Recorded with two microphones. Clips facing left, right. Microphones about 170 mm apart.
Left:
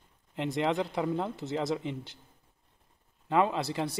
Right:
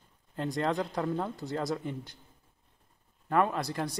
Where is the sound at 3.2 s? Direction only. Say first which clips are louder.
Left 1 dB; 25° left (ahead or behind).